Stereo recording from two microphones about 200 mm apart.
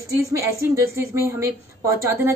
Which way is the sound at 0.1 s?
15° right (ahead or behind).